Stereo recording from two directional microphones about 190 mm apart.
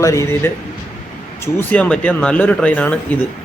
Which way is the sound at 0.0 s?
15° left (ahead or behind).